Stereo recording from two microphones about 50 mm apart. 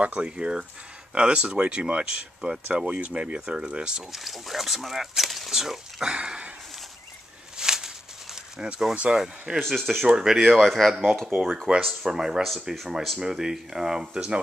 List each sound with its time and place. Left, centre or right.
0.0 s speech: right
4.1 s speech: centre
6.1 s speech: centre
7.5 s a sound: centre
8.5 s speech: centre
9.6 s speech: centre
10.0 s speech: centre
12.0 s speech: centre